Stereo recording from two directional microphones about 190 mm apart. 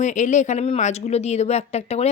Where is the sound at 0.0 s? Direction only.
40° left (ahead or behind).